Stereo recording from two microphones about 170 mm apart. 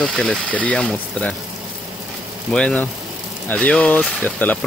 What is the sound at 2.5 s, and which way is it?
Speech, 5° left (ahead or behind).